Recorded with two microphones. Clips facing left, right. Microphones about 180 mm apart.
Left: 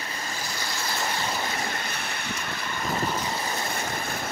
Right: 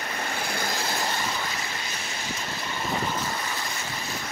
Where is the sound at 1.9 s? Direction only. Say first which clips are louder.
Left 1 dB; 60° left (ahead or behind).